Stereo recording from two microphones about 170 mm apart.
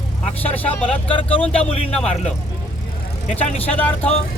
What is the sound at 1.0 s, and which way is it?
Speech, 30° left (ahead or behind).